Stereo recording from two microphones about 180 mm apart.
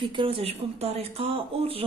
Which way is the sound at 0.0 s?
30° right (ahead or behind).